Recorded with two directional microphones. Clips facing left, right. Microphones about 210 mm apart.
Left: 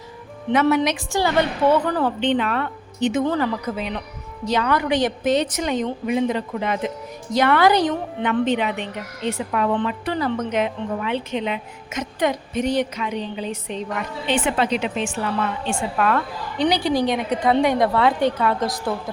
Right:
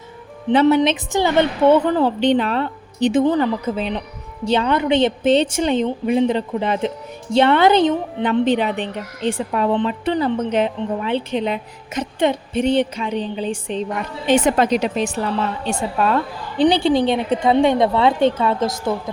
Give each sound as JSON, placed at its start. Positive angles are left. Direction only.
{"t": 0.5, "sound": "a woman's voice", "side_deg": -30}
{"t": 0.8, "sound": "a woman's voice", "side_deg": -20}
{"t": 3.2, "sound": "a woman's voice", "side_deg": -20}
{"t": 14.3, "sound": "a woman's voice", "side_deg": -40}